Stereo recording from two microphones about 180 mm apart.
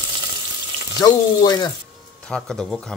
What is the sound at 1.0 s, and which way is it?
Speech, 25° left (ahead or behind).